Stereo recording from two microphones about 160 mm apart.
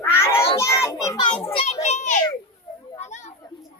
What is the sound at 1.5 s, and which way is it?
Children playing, 40° left (ahead or behind).